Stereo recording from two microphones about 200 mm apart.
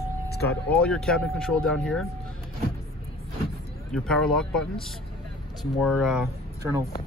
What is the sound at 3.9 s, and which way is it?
Speech, 5° left (ahead or behind).